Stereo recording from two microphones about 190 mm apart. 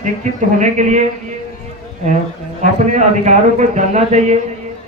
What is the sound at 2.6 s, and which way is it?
Speech, 40° right (ahead or behind).